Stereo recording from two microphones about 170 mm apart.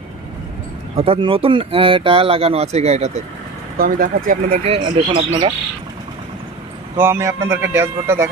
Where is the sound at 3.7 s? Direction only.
60° right (ahead or behind).